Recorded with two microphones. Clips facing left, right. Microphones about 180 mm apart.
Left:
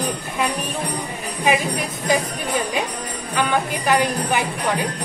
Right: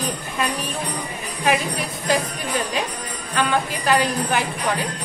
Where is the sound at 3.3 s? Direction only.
10° left (ahead or behind).